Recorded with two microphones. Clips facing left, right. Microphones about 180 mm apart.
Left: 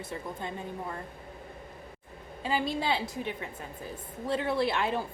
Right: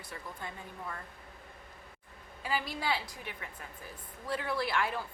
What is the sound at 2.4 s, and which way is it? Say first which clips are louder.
A woman's voice: left 5 dB; 25° left (ahead or behind).